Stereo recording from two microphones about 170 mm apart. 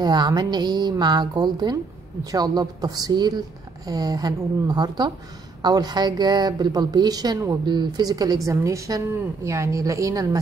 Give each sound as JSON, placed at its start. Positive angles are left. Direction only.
{"t": 0.0, "sound": "a woman's voice", "side_deg": -25}